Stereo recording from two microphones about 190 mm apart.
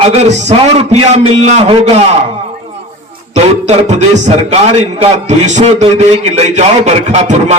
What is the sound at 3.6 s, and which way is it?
A man's voice, 35° right (ahead or behind).